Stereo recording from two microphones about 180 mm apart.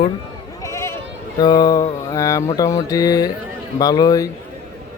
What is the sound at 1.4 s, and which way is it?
Mantra, 20° left (ahead or behind).